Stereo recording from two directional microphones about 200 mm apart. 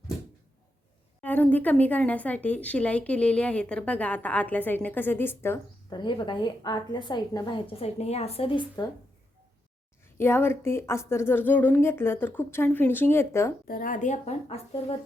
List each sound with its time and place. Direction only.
1.2 s speech: 10° left (ahead or behind)
6.0 s a woman's voice: 25° left (ahead or behind)
10.2 s speech: 10° left (ahead or behind)
13.7 s a woman's voice: 45° left (ahead or behind)